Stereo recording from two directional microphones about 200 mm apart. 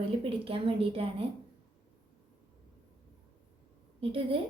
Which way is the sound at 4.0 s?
25° right (ahead or behind).